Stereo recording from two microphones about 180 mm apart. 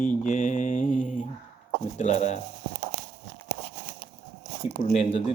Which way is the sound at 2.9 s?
65° right (ahead or behind).